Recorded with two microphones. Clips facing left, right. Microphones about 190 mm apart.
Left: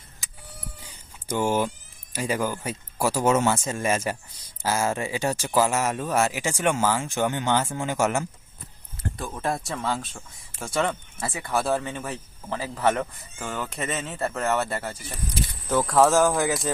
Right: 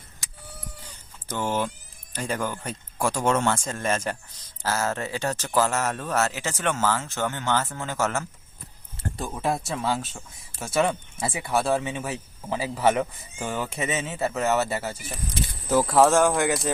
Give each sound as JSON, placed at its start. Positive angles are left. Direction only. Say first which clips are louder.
{"t": 1.3, "sound": "speech", "louder": "left 3 dB", "side_deg": 10}
{"t": 9.0, "sound": "a sound", "louder": "even", "side_deg": -30}
{"t": 9.3, "sound": "speech", "louder": "right 2 dB", "side_deg": -5}
{"t": 11.5, "sound": "speech", "louder": "right 1 dB", "side_deg": 0}